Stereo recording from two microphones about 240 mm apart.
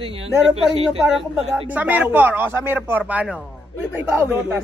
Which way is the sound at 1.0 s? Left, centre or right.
Centre.